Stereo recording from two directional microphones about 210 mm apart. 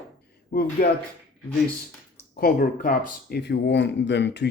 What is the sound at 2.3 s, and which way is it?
Speech, 45° left (ahead or behind).